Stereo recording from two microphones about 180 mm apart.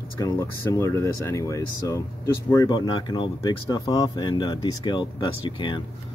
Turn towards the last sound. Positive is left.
turn(degrees=25)  # may be behind; listen again after turning